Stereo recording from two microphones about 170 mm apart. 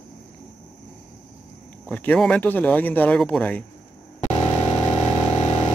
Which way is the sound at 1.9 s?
5° left (ahead or behind).